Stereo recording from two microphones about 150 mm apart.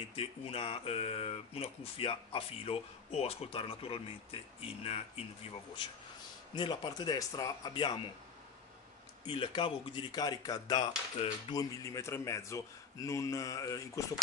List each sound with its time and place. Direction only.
0.1 s speech: 40° left (ahead or behind)
6.5 s a man's voice: 30° left (ahead or behind)
9.2 s a man's voice: 35° left (ahead or behind)